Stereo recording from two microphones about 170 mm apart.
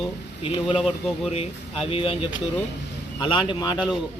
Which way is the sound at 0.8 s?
Centre (ahead or behind).